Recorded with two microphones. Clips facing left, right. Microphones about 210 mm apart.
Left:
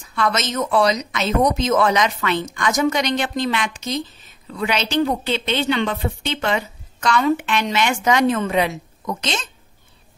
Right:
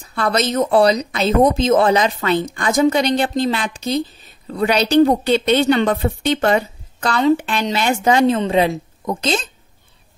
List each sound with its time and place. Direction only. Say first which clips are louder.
0.0 s a woman's voice: right 3 dB; 35° right (ahead or behind)